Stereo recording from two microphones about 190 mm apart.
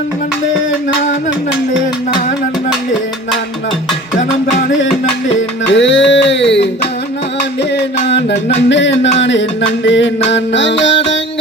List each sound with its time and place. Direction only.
5.7 s music: 75° left (ahead or behind)
8.0 s music: 65° left (ahead or behind)